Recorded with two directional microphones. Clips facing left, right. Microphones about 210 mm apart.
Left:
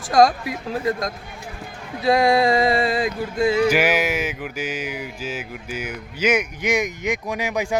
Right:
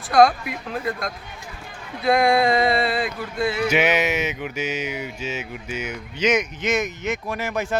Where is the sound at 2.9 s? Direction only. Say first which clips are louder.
Left 3 dB; 45° left (ahead or behind).